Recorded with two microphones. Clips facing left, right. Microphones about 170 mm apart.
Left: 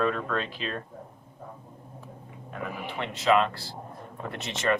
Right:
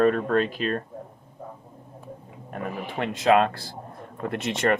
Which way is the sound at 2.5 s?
55° right (ahead or behind).